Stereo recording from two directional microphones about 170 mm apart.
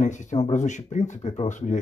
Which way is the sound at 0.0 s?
45° left (ahead or behind).